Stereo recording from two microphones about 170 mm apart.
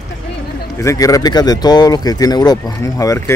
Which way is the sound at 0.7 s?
20° left (ahead or behind).